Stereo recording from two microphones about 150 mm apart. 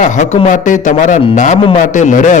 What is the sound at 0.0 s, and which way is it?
A man's voice, 55° left (ahead or behind).